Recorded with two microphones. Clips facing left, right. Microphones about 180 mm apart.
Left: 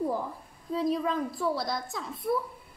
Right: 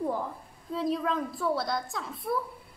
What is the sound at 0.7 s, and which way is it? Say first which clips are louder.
A woman's voice: left 1 dB; centre (ahead or behind).